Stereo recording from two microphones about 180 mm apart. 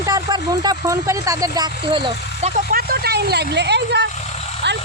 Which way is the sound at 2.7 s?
60° right (ahead or behind).